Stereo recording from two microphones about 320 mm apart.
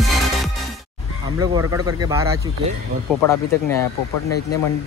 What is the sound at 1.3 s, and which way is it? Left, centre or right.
Speech, centre.